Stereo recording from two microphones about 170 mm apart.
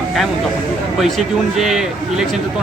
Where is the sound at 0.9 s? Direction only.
Centre (ahead or behind).